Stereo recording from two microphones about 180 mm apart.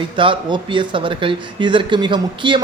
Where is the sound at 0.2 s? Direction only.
25° right (ahead or behind).